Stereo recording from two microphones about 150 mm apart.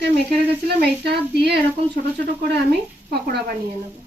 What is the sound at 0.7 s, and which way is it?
Speech, 90° right.